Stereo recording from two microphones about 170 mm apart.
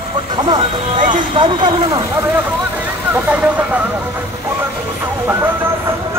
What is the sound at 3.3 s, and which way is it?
Vehicle, 5° right (ahead or behind).